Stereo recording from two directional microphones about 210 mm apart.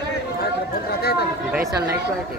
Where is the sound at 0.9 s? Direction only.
50° left (ahead or behind).